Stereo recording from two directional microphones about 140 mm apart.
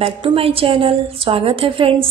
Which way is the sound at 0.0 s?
40° right (ahead or behind).